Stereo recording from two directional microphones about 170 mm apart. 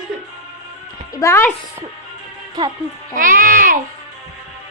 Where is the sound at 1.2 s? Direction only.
15° left (ahead or behind).